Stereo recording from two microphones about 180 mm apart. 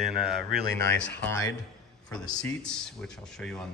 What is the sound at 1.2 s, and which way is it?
A man's voice, 15° left (ahead or behind).